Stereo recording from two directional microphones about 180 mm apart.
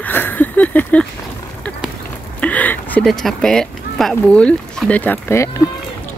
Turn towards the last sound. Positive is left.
turn(degrees=15)  # may be behind; listen again after turning